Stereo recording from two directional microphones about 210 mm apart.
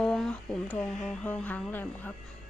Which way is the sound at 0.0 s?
5° left (ahead or behind).